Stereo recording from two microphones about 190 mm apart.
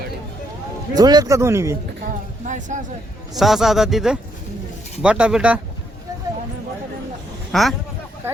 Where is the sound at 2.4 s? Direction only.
40° right (ahead or behind).